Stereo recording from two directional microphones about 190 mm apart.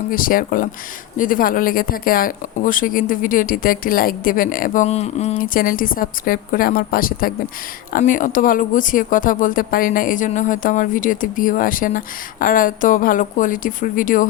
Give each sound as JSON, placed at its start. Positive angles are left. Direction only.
{"t": 0.1, "sound": "speech", "side_deg": 45}